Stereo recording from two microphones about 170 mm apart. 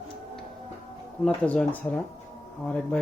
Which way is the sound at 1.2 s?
5° left (ahead or behind).